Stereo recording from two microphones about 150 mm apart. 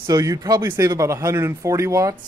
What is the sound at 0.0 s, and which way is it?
Speech, 25° right (ahead or behind).